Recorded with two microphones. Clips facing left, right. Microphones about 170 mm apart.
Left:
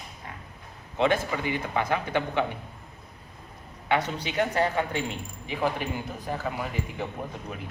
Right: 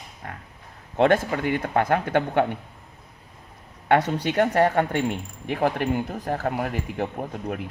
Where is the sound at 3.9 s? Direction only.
55° right (ahead or behind).